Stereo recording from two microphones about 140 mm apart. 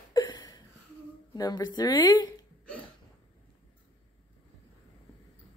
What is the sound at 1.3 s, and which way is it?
A woman's voice, 30° left (ahead or behind).